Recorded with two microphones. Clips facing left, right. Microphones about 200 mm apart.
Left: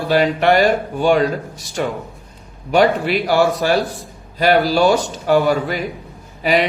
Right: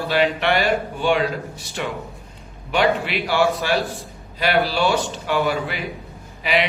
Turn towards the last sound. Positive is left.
turn(degrees=40)  # may be behind; listen again after turning